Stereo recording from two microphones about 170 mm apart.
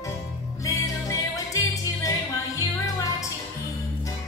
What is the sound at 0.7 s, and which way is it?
Music, 20° left (ahead or behind).